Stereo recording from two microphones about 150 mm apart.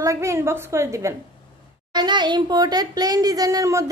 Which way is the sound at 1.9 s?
30° right (ahead or behind).